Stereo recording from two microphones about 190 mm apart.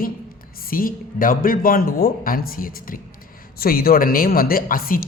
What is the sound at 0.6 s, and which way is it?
Speech, 50° left (ahead or behind).